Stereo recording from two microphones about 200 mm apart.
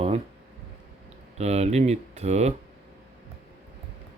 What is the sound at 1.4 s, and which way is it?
Speech, 35° right (ahead or behind).